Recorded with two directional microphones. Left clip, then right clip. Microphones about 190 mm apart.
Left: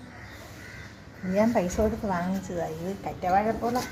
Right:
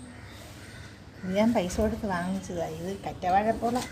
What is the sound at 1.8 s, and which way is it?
A woman's voice, centre (ahead or behind).